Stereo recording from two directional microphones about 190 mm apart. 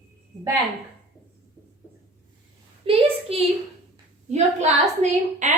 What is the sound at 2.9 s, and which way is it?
A woman's voice, 30° right (ahead or behind).